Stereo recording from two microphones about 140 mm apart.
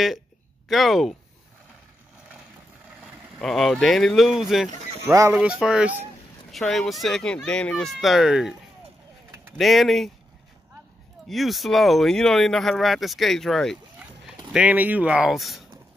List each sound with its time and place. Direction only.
0.7 s speech: centre (ahead or behind)
3.0 s speech: centre (ahead or behind)
5.0 s speech: 20° right (ahead or behind)
5.3 s speech: 5° right (ahead or behind)
9.6 s speech: centre (ahead or behind)
11.2 s speech: centre (ahead or behind)